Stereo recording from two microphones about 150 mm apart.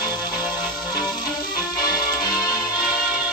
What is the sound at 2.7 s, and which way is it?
Music, 10° right (ahead or behind).